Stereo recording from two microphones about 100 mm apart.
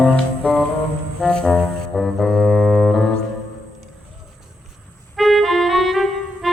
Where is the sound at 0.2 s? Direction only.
5° left (ahead or behind).